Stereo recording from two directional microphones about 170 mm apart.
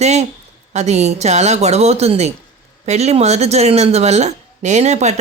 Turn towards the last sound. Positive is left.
turn(degrees=-40)  # may be behind; listen again after turning